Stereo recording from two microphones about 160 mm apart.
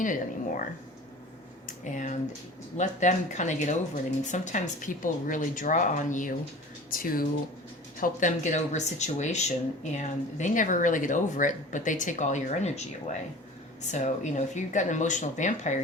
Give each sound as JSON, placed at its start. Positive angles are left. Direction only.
{"t": 0.0, "sound": "speech", "side_deg": 55}
{"t": 1.6, "sound": "a sound", "side_deg": 50}
{"t": 2.7, "sound": "speech", "side_deg": 50}
{"t": 8.0, "sound": "speech", "side_deg": 50}